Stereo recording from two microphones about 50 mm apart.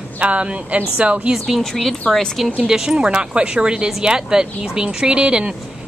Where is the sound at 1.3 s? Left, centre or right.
Centre.